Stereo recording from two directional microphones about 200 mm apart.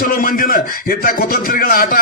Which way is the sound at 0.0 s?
45° left (ahead or behind).